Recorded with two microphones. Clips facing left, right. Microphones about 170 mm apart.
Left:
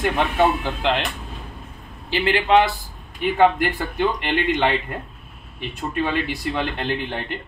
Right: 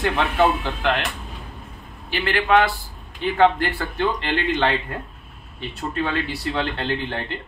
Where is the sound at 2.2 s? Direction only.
20° left (ahead or behind).